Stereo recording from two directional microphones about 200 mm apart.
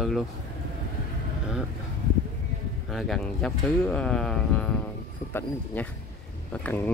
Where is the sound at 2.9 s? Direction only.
Centre (ahead or behind).